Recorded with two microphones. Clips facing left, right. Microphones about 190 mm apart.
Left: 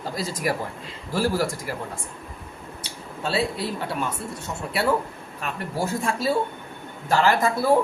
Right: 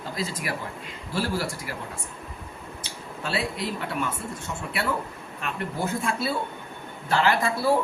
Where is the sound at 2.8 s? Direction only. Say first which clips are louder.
Left 4 dB; 30° left (ahead or behind).